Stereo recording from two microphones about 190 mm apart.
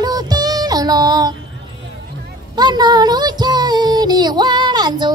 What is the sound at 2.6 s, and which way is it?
Child singing, 20° right (ahead or behind).